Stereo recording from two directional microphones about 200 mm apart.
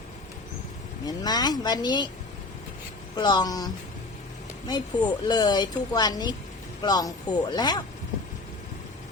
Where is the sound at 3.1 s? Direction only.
20° left (ahead or behind).